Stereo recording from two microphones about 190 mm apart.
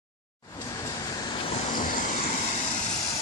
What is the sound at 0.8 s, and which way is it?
Vehicle, 25° left (ahead or behind).